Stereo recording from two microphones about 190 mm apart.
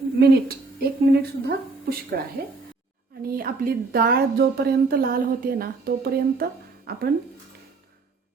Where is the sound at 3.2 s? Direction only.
50° right (ahead or behind).